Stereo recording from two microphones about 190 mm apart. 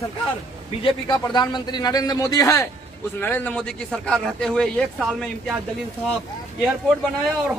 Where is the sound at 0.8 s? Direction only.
25° left (ahead or behind); by 5.5 s 5° left (ahead or behind).